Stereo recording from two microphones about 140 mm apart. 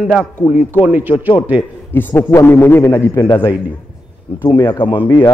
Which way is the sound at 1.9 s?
15° left (ahead or behind).